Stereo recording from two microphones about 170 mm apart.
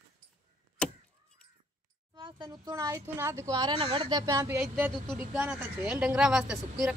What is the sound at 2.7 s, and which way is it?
A woman's voice, 15° right (ahead or behind).